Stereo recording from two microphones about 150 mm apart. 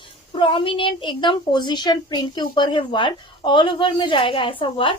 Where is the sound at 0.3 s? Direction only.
35° left (ahead or behind).